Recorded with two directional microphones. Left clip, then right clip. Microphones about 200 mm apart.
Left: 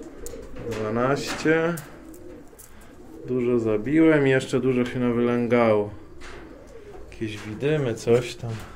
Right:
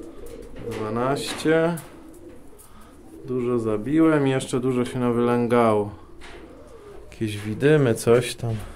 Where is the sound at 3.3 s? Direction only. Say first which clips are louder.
Left 1 dB; 20° right (ahead or behind).